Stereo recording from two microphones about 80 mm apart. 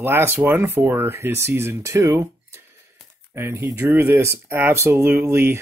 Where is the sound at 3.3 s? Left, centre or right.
Right.